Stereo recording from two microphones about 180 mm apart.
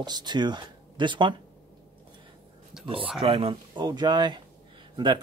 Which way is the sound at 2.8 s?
30° right (ahead or behind).